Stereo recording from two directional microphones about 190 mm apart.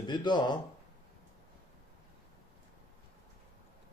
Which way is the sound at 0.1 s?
25° left (ahead or behind).